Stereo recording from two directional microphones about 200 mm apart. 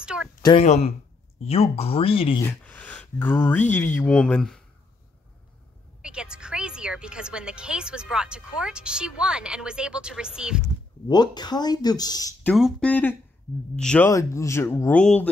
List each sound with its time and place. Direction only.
0.0 s a sound: 5° right (ahead or behind)
0.4 s speech: 25° left (ahead or behind)
2.4 s speech: 5° left (ahead or behind)
6.0 s a woman's voice: 5° right (ahead or behind)
11.1 s speech: 20° left (ahead or behind)
12.5 s speech: centre (ahead or behind)